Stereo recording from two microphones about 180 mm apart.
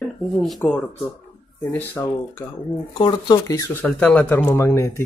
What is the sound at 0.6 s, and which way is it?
Speech, 5° left (ahead or behind).